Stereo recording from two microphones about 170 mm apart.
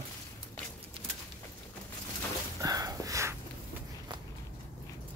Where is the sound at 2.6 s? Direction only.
20° right (ahead or behind).